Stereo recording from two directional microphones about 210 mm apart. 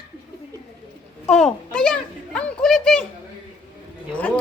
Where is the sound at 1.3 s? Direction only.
5° left (ahead or behind).